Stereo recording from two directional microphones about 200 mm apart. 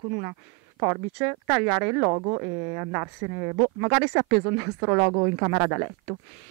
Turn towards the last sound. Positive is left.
turn(degrees=-15)  # may be behind; listen again after turning